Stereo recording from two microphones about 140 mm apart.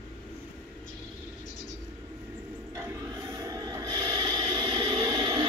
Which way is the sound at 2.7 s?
20° right (ahead or behind).